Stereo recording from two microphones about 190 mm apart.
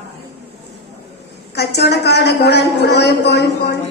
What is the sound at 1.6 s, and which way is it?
A woman's voice, 60° left (ahead or behind).